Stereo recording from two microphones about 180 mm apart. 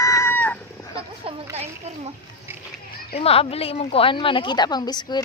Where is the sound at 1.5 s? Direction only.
35° right (ahead or behind).